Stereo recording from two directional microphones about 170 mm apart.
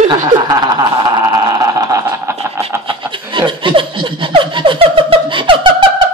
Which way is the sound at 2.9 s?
30° right (ahead or behind).